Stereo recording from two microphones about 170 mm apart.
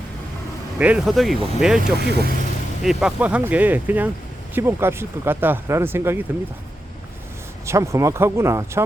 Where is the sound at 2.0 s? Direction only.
75° right (ahead or behind).